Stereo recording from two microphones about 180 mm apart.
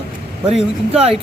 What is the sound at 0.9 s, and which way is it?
Speech, 35° right (ahead or behind).